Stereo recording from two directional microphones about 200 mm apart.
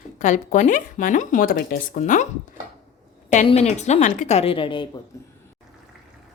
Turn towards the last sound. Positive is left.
turn(degrees=15)  # may be behind; listen again after turning